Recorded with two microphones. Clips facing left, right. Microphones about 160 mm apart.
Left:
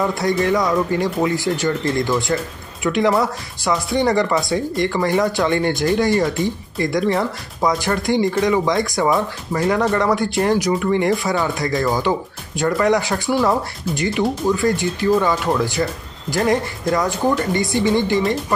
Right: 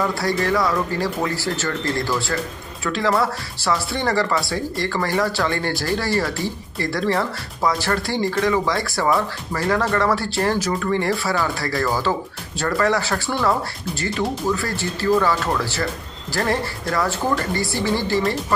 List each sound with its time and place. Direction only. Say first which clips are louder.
0.1 s speech: left 3 dB; 20° left (ahead or behind)